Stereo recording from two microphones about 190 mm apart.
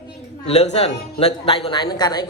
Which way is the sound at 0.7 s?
35° left (ahead or behind).